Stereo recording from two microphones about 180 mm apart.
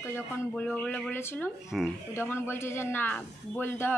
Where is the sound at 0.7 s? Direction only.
5° left (ahead or behind).